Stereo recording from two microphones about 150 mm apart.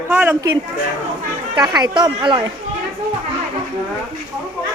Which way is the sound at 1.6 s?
25° right (ahead or behind).